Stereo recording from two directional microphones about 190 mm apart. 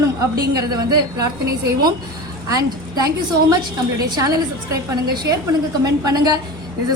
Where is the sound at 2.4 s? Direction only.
20° right (ahead or behind).